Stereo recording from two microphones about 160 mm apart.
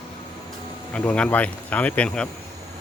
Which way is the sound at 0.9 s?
10° left (ahead or behind).